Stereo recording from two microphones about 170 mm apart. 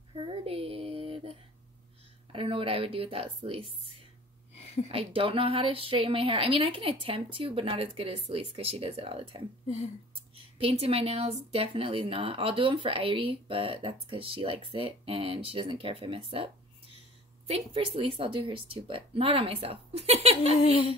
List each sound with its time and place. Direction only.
0.1 s a sound: 30° right (ahead or behind)
2.3 s speech: 30° right (ahead or behind)
4.9 s speech: 30° right (ahead or behind)
17.5 s speech: 35° right (ahead or behind)